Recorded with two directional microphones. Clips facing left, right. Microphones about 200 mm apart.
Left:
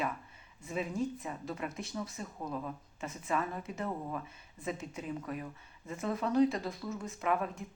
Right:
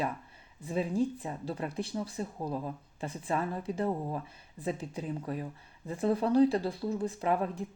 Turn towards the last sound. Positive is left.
turn(degrees=-30)  # may be behind; listen again after turning